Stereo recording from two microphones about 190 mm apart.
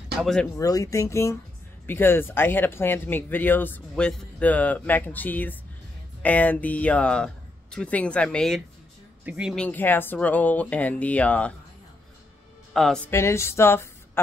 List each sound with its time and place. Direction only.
0.2 s speech: 5° left (ahead or behind)
0.6 s speech: 20° left (ahead or behind); by 9.6 s 5° right (ahead or behind)
9.6 s speech: 10° left (ahead or behind)
12.7 s speech: 5° left (ahead or behind)